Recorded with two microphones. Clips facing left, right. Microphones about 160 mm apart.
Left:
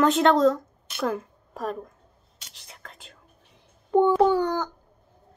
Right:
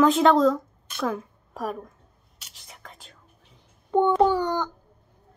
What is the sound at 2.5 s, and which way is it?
Whispering, centre (ahead or behind).